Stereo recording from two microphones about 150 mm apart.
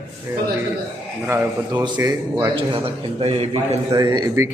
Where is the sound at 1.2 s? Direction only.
10° right (ahead or behind).